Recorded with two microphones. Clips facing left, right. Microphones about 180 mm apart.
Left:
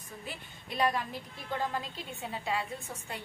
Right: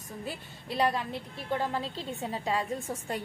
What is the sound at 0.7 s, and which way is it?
A woman's voice, 30° right (ahead or behind).